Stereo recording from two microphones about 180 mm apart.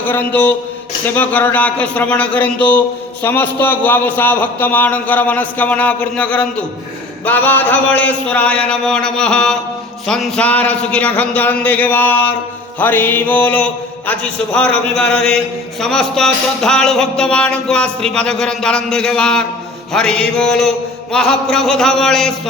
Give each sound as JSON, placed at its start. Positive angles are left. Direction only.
{"t": 0.0, "sound": "a man's voice", "side_deg": 10}
{"t": 15.8, "sound": "music", "side_deg": 0}